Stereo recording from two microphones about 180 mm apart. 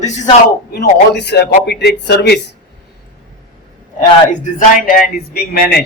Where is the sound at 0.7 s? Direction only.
70° left (ahead or behind).